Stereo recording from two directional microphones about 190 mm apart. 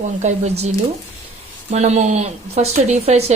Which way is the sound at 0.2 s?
35° right (ahead or behind).